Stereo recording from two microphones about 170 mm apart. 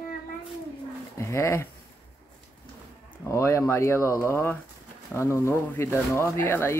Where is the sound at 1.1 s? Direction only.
15° left (ahead or behind).